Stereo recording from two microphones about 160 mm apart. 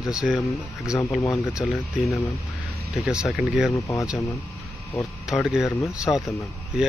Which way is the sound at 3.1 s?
5° right (ahead or behind).